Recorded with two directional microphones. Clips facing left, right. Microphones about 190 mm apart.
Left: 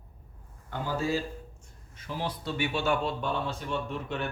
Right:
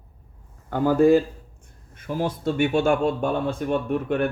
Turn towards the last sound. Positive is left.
turn(degrees=-55)  # may be behind; listen again after turning